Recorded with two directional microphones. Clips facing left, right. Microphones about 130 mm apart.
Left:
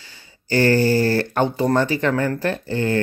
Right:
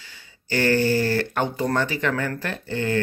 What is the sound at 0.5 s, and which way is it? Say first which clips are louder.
Speech: left 4 dB; 35° left (ahead or behind).